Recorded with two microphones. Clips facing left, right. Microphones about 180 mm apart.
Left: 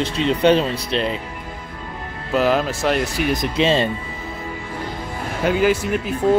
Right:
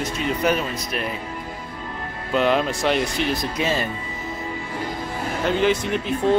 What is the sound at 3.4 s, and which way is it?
Speech, 25° left (ahead or behind).